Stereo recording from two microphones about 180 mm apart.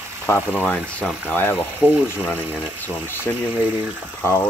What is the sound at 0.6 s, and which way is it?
Speech, 10° left (ahead or behind).